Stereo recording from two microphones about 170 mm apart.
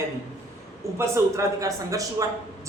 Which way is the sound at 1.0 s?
20° right (ahead or behind).